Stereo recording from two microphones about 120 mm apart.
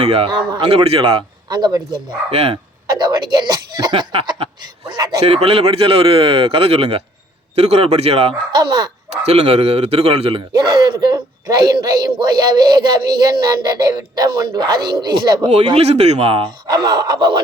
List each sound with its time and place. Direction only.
0.0 s a man's voice: 60° right (ahead or behind)
0.3 s a man's voice: 40° right (ahead or behind)
0.7 s a man's voice: 55° right (ahead or behind)
1.5 s a man's voice: 35° right (ahead or behind)
2.3 s a man's voice: 55° right (ahead or behind)
3.0 s speech: 35° right (ahead or behind)
4.9 s a man's voice: 35° right (ahead or behind)
5.2 s a man's voice: 55° right (ahead or behind)
8.5 s a man's voice: 35° right (ahead or behind)
9.2 s a man's voice: 60° right (ahead or behind)
10.6 s a man's voice: 35° right (ahead or behind)
15.7 s a man's voice: 60° right (ahead or behind); by 17.4 s 40° right (ahead or behind)